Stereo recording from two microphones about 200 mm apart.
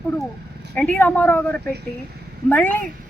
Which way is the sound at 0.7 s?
5° left (ahead or behind).